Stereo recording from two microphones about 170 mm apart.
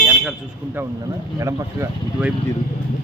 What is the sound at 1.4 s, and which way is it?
Speech, 20° right (ahead or behind).